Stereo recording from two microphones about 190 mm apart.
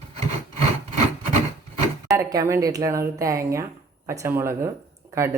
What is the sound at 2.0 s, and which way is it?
Speech, 15° right (ahead or behind).